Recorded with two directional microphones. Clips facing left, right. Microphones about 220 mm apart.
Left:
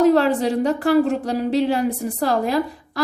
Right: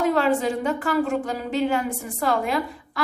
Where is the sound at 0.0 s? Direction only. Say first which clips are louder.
Left 5 dB; 35° left (ahead or behind).